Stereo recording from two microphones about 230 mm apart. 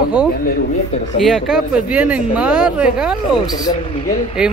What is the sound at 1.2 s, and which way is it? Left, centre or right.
Speech, centre.